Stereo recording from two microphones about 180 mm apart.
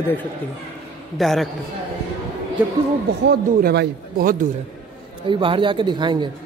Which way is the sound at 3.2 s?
65° right (ahead or behind).